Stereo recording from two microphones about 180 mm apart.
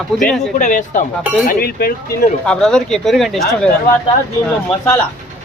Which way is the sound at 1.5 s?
60° left (ahead or behind).